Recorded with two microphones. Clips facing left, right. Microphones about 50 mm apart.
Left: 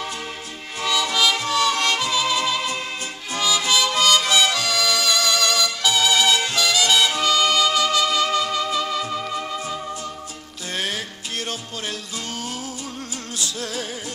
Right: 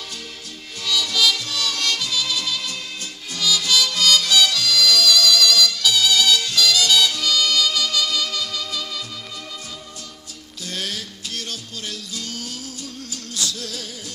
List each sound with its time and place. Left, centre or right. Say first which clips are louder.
0.7 s music: left 2 dB; left
3.3 s harmonica: left 1 dB; left
10.7 s music: left 3 dB; left
13.4 s music: left 1 dB; left